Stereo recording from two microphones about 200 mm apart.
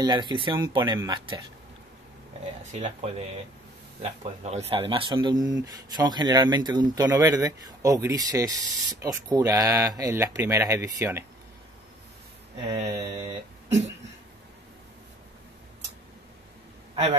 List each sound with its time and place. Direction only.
0.0 s speech: 20° right (ahead or behind)
2.7 s speech: 30° right (ahead or behind); by 11.2 s 15° right (ahead or behind)
12.9 s speech: 20° right (ahead or behind)